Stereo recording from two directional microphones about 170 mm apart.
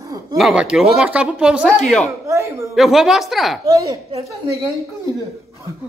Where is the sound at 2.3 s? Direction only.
15° right (ahead or behind).